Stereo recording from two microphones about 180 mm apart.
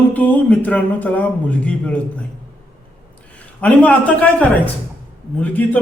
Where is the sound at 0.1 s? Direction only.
10° left (ahead or behind).